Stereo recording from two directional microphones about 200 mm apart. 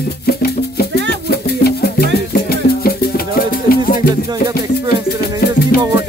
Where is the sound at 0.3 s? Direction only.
50° left (ahead or behind).